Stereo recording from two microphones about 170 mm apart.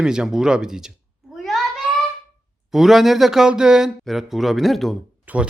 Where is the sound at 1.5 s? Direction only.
Centre (ahead or behind).